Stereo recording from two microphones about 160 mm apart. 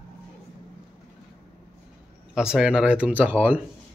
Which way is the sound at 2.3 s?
5° right (ahead or behind).